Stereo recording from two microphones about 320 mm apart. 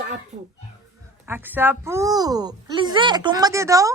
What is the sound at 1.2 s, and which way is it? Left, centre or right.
A woman's voice, centre.